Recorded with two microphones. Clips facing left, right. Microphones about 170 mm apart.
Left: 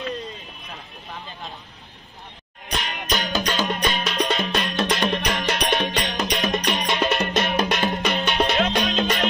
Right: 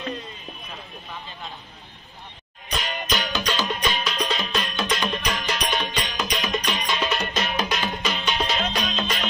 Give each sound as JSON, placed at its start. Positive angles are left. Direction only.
{"t": 2.7, "sound": "music", "side_deg": 50}